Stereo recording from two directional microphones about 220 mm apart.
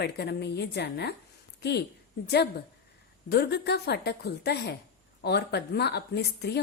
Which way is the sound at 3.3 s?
45° left (ahead or behind).